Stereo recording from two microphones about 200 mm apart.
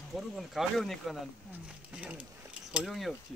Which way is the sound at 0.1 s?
Centre (ahead or behind).